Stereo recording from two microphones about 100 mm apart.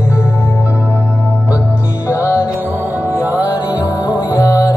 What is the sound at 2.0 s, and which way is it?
Music, 30° left (ahead or behind).